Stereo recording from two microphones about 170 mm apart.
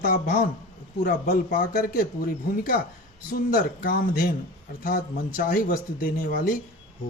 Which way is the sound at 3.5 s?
60° left (ahead or behind).